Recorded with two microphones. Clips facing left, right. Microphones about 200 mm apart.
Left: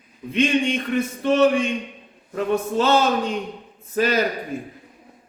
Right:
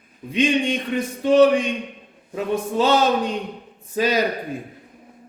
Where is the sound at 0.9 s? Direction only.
15° right (ahead or behind).